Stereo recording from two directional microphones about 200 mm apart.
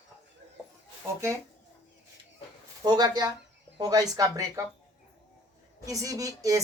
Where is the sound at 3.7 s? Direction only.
20° right (ahead or behind).